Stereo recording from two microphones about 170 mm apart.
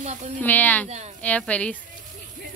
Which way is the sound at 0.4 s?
10° left (ahead or behind).